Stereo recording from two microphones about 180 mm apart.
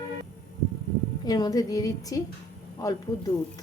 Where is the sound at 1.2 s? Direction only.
20° left (ahead or behind).